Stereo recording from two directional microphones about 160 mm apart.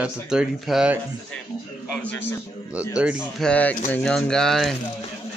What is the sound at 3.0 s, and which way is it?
Speech, 5° right (ahead or behind).